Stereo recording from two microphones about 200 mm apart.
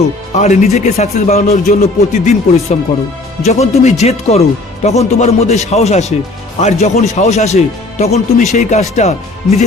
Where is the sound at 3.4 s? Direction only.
35° left (ahead or behind).